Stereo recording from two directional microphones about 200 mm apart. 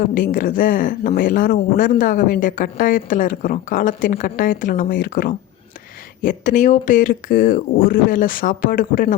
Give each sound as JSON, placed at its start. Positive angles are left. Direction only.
{"t": 0.0, "sound": "speech", "side_deg": 45}